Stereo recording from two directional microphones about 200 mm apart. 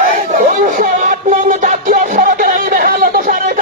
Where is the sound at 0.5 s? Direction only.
40° right (ahead or behind).